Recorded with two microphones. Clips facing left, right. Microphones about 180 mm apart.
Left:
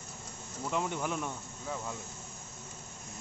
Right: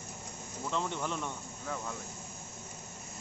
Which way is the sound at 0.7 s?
10° left (ahead or behind).